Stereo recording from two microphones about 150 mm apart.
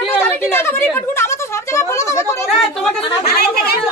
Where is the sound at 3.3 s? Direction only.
90° left.